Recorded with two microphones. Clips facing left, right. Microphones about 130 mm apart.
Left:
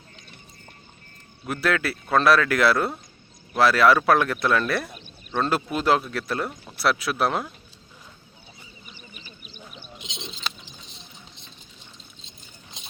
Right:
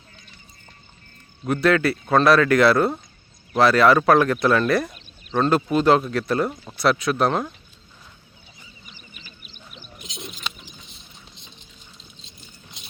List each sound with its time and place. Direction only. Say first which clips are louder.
1.6 s speech: right 5 dB; centre (ahead or behind)
9.9 s bird: right 2 dB; 25° left (ahead or behind)